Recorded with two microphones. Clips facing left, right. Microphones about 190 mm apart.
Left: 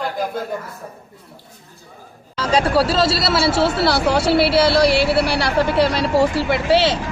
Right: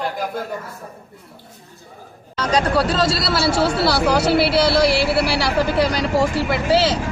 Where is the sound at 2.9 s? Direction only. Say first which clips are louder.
Left 2 dB; 25° left (ahead or behind).